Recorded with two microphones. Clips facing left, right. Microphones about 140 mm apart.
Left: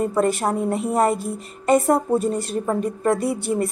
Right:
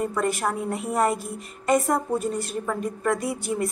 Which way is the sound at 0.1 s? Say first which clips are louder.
Left 5 dB; 30° left (ahead or behind).